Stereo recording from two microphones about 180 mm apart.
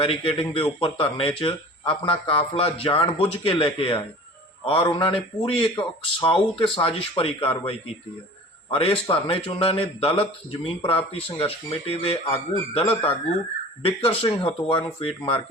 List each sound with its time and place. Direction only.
0.0 s speech: 30° left (ahead or behind)